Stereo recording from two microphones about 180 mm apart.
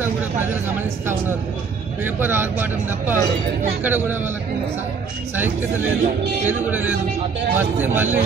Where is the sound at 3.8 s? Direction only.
10° right (ahead or behind).